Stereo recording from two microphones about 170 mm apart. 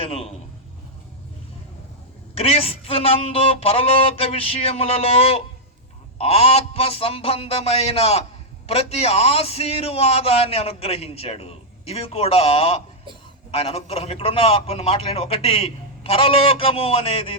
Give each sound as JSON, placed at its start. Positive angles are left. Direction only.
{"t": 0.0, "sound": "a man's voice", "side_deg": 35}
{"t": 2.3, "sound": "a man's voice", "side_deg": 35}